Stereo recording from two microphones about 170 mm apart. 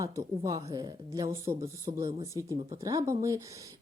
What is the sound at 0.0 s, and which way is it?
Speech, 20° right (ahead or behind).